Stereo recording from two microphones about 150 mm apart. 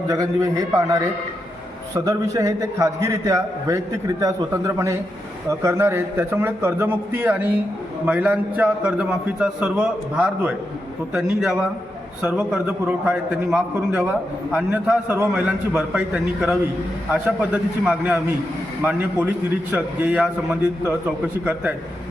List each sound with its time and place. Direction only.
0.1 s a man's voice: 25° right (ahead or behind)
2.3 s a man's voice: 20° right (ahead or behind)